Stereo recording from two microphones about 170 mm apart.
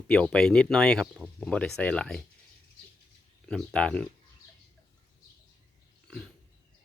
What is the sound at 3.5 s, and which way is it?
Speech, 5° left (ahead or behind).